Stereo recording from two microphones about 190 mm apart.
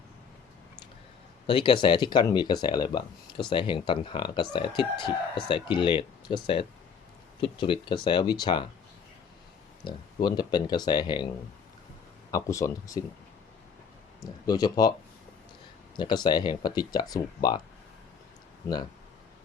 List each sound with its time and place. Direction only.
1.5 s speech: 25° left (ahead or behind)
9.8 s speech: 25° left (ahead or behind)
12.3 s speech: 15° left (ahead or behind)
14.2 s speech: 20° left (ahead or behind)
16.0 s speech: 25° left (ahead or behind)